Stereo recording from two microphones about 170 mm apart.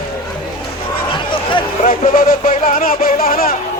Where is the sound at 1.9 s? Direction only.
55° left (ahead or behind).